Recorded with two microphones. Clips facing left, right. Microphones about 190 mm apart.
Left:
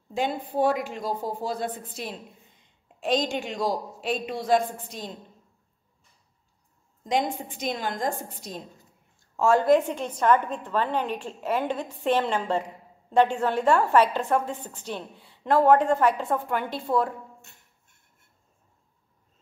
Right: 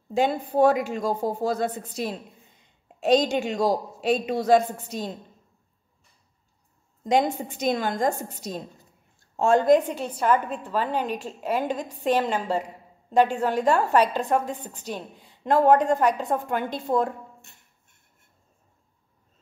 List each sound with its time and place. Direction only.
0.2 s a man's voice: 45° right (ahead or behind)
7.1 s a man's voice: 40° right (ahead or behind)
9.4 s a woman's voice: 20° right (ahead or behind)